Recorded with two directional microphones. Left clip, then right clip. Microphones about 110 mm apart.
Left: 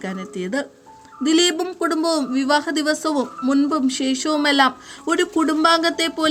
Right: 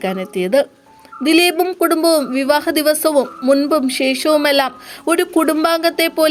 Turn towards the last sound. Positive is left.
turn(degrees=-35)  # may be behind; listen again after turning